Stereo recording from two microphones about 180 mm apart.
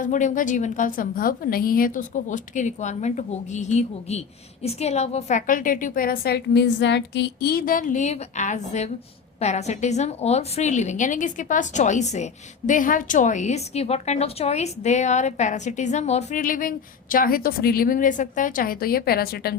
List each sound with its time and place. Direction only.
0.0 s a woman's voice: 45° left (ahead or behind)